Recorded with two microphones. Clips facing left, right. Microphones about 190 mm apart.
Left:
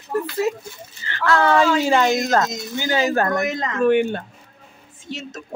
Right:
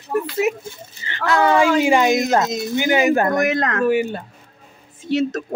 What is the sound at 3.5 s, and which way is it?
Speech, 65° right (ahead or behind).